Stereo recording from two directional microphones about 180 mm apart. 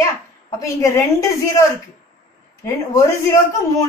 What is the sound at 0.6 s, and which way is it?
Speech, 20° left (ahead or behind).